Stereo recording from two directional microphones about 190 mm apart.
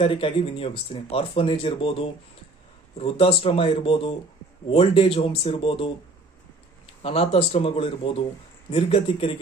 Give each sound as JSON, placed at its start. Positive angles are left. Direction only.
{"t": 0.0, "sound": "speech", "side_deg": 30}
{"t": 7.0, "sound": "speech", "side_deg": 30}